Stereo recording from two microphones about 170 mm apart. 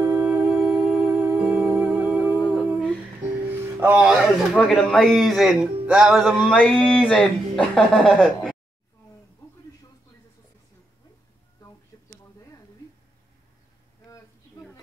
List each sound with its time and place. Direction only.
0.0 s music: 10° right (ahead or behind)
3.8 s a man's voice: 5° right (ahead or behind)
11.6 s a sound: 20° left (ahead or behind)